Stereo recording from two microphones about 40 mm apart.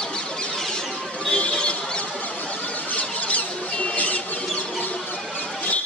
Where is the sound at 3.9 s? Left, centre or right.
Left.